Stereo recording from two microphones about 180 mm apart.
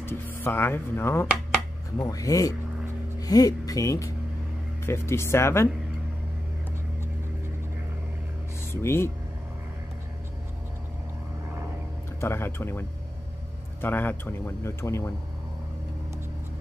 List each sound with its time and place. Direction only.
0.0 s speech: 10° left (ahead or behind)
8.8 s speech: 15° left (ahead or behind)
12.2 s speech: 15° left (ahead or behind)